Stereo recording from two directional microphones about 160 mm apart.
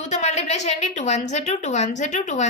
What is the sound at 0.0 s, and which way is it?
A woman's voice, 45° left (ahead or behind).